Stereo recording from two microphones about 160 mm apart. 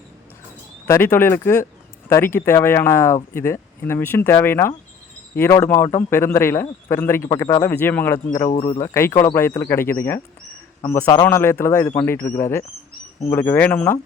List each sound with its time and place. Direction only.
0.9 s a man's voice: 15° left (ahead or behind)